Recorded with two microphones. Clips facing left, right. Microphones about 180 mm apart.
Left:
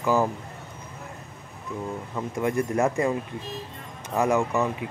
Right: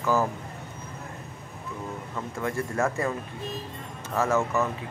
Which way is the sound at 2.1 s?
15° left (ahead or behind).